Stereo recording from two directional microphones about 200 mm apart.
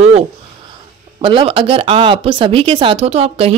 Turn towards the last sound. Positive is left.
turn(degrees=-30)  # may be behind; listen again after turning